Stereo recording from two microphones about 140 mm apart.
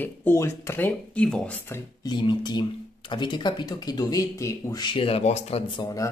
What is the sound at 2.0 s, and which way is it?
Speech, 35° left (ahead or behind).